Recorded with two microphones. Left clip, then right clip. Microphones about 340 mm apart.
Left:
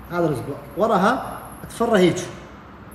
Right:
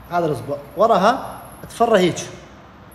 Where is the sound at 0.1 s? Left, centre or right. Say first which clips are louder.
Right 2 dB; centre.